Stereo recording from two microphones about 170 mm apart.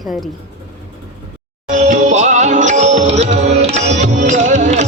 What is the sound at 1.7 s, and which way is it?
Music, 45° right (ahead or behind).